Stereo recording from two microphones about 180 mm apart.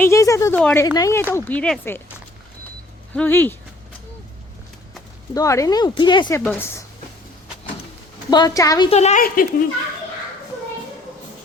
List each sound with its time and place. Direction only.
0.0 s a woman's voice: 15° left (ahead or behind)
3.2 s speech: 10° left (ahead or behind)
5.3 s speech: 20° left (ahead or behind)
6.4 s speech: 10° left (ahead or behind)
8.3 s speech: 20° left (ahead or behind)
8.9 s a woman's voice: 40° left (ahead or behind)
9.2 s speech: 50° left (ahead or behind)